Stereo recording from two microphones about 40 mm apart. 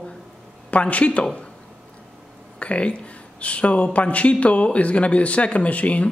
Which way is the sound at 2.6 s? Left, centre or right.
Left.